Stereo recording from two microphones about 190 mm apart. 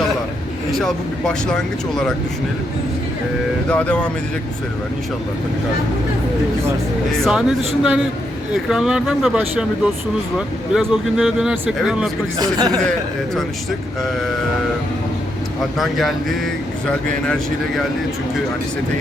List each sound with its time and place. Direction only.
0.7 s speech: centre (ahead or behind)
3.7 s speech: 5° left (ahead or behind)
7.2 s speech: 5° right (ahead or behind)
12.4 s speech: 20° right (ahead or behind)
15.8 s speech: centre (ahead or behind)